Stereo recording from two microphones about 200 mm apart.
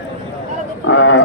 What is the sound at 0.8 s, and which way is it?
Speech, 70° left (ahead or behind).